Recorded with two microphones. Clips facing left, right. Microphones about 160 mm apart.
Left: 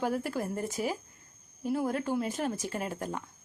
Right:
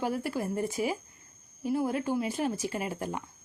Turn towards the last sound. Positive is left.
turn(degrees=-10)  # may be behind; listen again after turning